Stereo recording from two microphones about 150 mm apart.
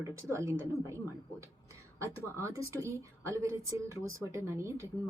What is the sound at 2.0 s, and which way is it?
Speech, 20° right (ahead or behind).